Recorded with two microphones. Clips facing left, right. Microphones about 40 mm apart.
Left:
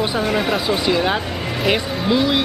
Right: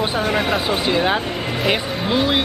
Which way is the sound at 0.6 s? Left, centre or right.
Right.